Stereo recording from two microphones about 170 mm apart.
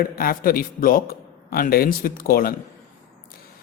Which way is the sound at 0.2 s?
60° left (ahead or behind).